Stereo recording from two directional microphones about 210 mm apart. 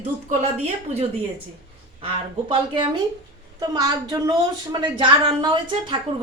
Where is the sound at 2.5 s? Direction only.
20° right (ahead or behind).